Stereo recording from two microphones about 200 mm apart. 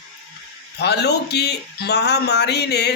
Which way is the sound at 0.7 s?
55° left (ahead or behind).